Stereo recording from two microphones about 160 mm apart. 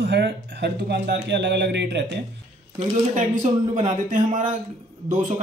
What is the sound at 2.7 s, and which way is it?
Speech, 40° right (ahead or behind).